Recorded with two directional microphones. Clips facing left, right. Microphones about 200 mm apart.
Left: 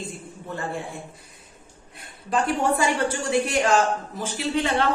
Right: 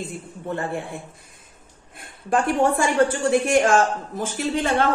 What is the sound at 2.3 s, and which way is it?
A woman's voice, 50° right (ahead or behind).